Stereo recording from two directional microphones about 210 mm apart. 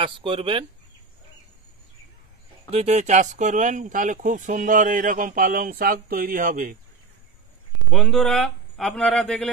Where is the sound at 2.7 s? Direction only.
30° right (ahead or behind).